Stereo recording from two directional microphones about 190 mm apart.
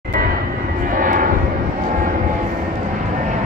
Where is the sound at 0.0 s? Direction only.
50° right (ahead or behind).